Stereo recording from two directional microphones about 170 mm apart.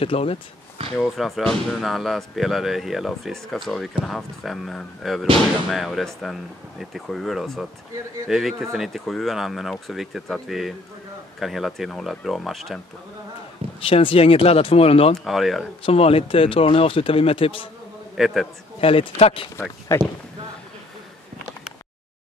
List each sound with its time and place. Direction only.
0.0 s speech: 35° left (ahead or behind)
0.9 s speech: centre (ahead or behind)
13.7 s speech: 30° left (ahead or behind)
15.1 s speech: centre (ahead or behind)
15.8 s speech: 35° left (ahead or behind)
18.1 s a man's voice: centre (ahead or behind)
18.8 s speech: 35° left (ahead or behind)
19.9 s speech: 15° left (ahead or behind)